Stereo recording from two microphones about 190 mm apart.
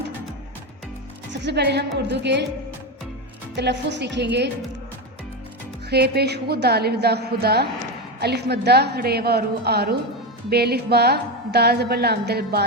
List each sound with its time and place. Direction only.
1.3 s a woman's voice: 65° right (ahead or behind)
3.5 s a woman's voice: 65° right (ahead or behind)
5.9 s a woman's voice: 60° right (ahead or behind)